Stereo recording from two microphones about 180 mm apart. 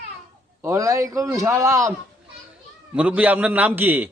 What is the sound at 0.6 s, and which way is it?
A man's voice, 15° right (ahead or behind).